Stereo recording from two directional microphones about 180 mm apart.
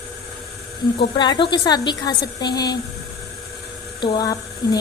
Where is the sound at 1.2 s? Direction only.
25° left (ahead or behind).